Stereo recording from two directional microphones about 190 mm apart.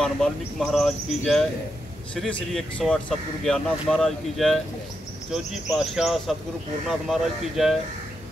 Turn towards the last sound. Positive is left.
turn(degrees=0)  # may be behind; listen again after turning